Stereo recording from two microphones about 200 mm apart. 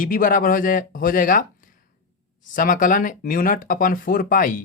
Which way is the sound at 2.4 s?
45° left (ahead or behind).